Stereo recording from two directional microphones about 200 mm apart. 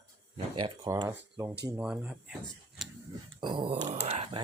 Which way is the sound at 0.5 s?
20° right (ahead or behind).